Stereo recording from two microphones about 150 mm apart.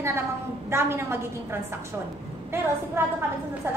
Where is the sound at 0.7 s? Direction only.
15° right (ahead or behind).